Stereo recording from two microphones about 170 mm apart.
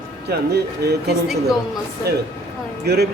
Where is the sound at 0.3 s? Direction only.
70° right (ahead or behind).